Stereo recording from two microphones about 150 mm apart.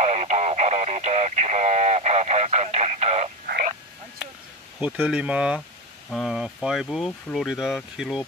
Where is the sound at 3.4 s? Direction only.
90° right.